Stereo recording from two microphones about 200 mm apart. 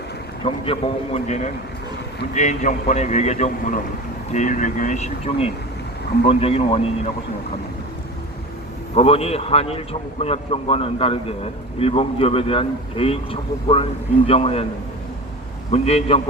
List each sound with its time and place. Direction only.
0.4 s a man's voice: 25° left (ahead or behind)
9.0 s a man's voice: 30° left (ahead or behind)
15.7 s a man's voice: 30° left (ahead or behind)